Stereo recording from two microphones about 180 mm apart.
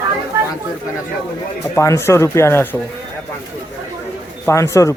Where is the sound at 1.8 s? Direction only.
15° left (ahead or behind).